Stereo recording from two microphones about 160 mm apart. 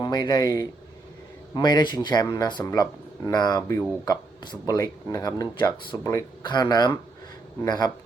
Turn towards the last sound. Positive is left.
turn(degrees=25)  # may be behind; listen again after turning